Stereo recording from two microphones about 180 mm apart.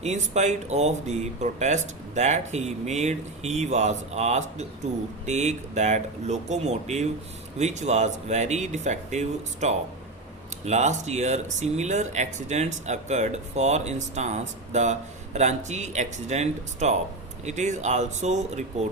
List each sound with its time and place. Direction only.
0.0 s speech: 40° right (ahead or behind)